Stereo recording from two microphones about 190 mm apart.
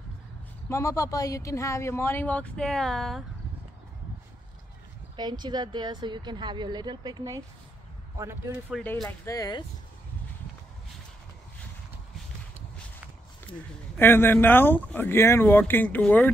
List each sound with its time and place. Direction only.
0.7 s speech: 15° left (ahead or behind); by 3.3 s centre (ahead or behind)
5.1 s speech: 25° right (ahead or behind)
8.7 s speech: centre (ahead or behind)
9.2 s speech: 20° left (ahead or behind)
13.6 s speech: 10° left (ahead or behind)